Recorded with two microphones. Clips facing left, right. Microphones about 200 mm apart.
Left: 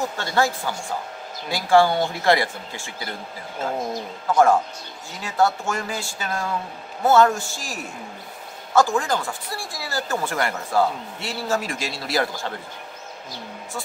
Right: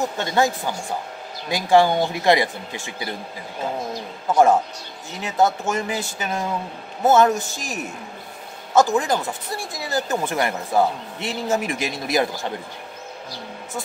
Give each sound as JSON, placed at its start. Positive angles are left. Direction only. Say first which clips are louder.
{"t": 0.2, "sound": "speech", "louder": "right 2 dB", "side_deg": -20}
{"t": 4.3, "sound": "speech", "louder": "right 1 dB", "side_deg": -20}